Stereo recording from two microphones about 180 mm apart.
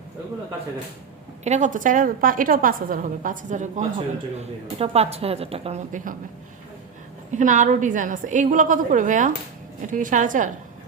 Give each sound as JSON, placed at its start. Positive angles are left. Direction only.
{"t": 1.5, "sound": "a woman's voice", "side_deg": -40}
{"t": 7.3, "sound": "a woman's voice", "side_deg": -45}